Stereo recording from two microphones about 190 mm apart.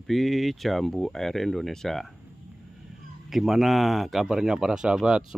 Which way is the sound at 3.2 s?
Centre (ahead or behind).